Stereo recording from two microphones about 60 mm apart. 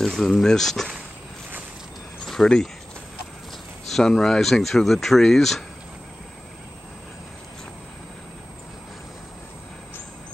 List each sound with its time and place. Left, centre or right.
0.0 s speech: centre
2.2 s speech: centre
3.9 s speech: centre